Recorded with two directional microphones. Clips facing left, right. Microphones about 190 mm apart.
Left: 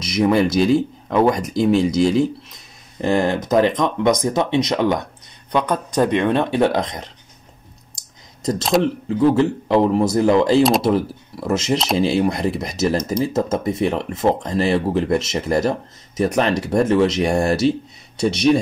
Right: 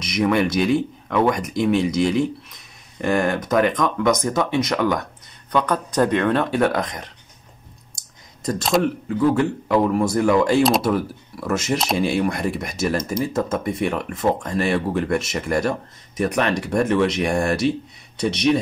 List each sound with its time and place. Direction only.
0.0 s speech: 25° left (ahead or behind)
8.7 s speech: centre (ahead or behind)
9.2 s speech: 30° left (ahead or behind)
16.9 s speech: 40° left (ahead or behind)